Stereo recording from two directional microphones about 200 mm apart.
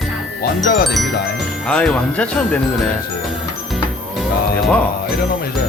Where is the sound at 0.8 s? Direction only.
Centre (ahead or behind).